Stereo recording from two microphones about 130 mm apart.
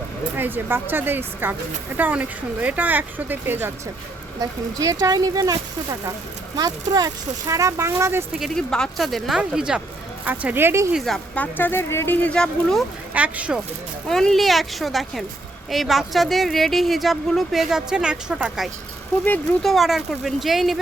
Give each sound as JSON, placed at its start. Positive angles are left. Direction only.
{"t": 0.3, "sound": "speech", "side_deg": -15}
{"t": 4.4, "sound": "speech", "side_deg": -25}
{"t": 8.3, "sound": "speech", "side_deg": 0}
{"t": 10.9, "sound": "speech", "side_deg": 0}
{"t": 11.5, "sound": "speech", "side_deg": 15}
{"t": 13.1, "sound": "speech", "side_deg": -10}
{"t": 14.1, "sound": "speech", "side_deg": 5}